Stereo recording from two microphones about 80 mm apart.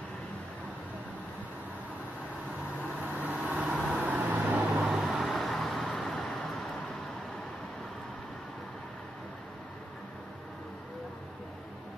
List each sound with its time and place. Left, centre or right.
3.0 s vehicle: centre
4.8 s vehicle: centre